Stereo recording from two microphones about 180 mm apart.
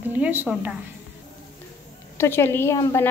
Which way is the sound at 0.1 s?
10° right (ahead or behind).